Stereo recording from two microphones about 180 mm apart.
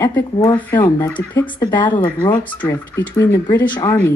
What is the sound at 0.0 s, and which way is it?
Speech, 15° left (ahead or behind).